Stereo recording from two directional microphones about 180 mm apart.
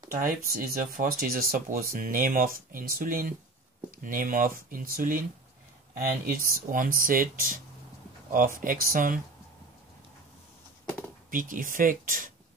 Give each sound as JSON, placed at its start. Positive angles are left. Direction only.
{"t": 0.1, "sound": "speech", "side_deg": -50}
{"t": 11.2, "sound": "speech", "side_deg": -50}